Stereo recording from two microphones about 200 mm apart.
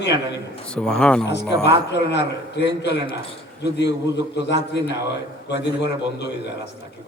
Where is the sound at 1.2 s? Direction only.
60° left (ahead or behind).